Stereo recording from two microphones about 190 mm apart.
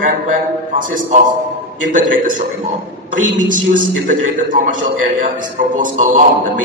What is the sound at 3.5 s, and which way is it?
A man's voice, 45° right (ahead or behind).